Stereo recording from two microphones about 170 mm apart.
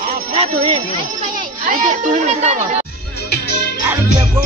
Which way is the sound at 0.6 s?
30° right (ahead or behind).